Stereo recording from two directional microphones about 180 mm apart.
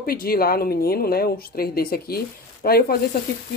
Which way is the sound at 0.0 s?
55° left (ahead or behind).